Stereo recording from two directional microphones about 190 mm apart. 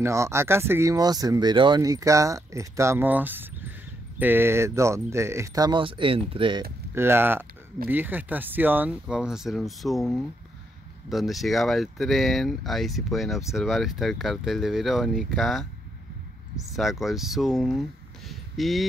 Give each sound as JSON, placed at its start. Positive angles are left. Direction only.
{"t": 0.0, "sound": "speech", "side_deg": -15}
{"t": 7.0, "sound": "speech", "side_deg": -10}
{"t": 16.7, "sound": "speech", "side_deg": 0}